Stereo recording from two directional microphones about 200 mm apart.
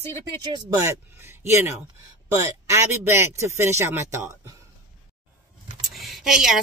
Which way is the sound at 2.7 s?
15° right (ahead or behind).